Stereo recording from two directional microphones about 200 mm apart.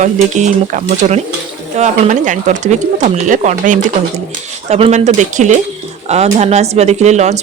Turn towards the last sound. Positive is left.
turn(degrees=-35)  # may be behind; listen again after turning